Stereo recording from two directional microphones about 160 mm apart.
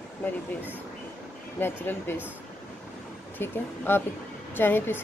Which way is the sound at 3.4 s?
15° left (ahead or behind).